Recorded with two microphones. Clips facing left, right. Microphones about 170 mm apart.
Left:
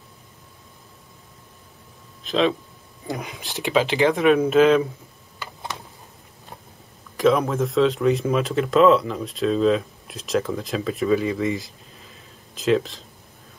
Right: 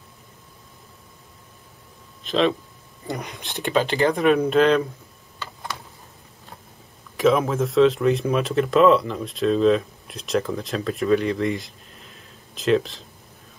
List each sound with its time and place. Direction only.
2.2 s speech: centre (ahead or behind)
5.4 s a sound: 20° left (ahead or behind)
7.2 s speech: centre (ahead or behind)